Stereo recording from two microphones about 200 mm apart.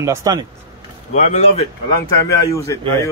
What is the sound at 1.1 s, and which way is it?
Speech, 35° left (ahead or behind).